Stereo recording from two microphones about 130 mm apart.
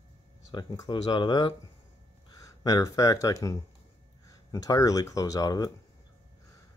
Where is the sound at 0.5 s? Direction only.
35° left (ahead or behind).